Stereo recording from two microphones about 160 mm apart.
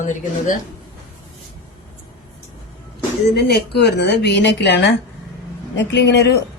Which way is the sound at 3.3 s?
90° left.